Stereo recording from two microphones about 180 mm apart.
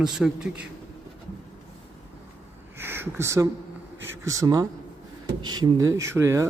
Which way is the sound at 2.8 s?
10° right (ahead or behind).